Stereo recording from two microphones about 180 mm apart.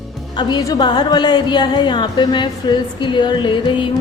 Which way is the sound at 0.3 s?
25° left (ahead or behind).